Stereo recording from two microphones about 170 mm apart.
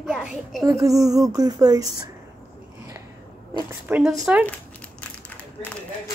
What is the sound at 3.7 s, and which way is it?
Speech, 15° right (ahead or behind).